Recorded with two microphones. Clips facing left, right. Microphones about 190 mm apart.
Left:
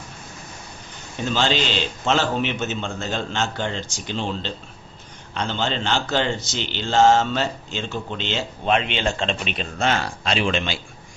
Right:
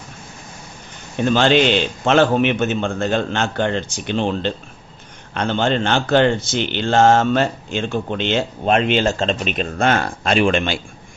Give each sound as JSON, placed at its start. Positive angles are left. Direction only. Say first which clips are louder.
{"t": 1.1, "sound": "a man's voice", "louder": "right 8 dB", "side_deg": -55}